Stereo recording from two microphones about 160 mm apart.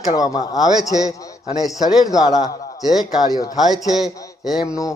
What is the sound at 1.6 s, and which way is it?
Speech, centre (ahead or behind).